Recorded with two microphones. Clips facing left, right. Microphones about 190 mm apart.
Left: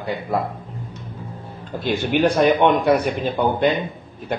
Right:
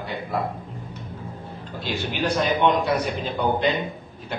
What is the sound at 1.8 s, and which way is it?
A man's voice, 55° left (ahead or behind).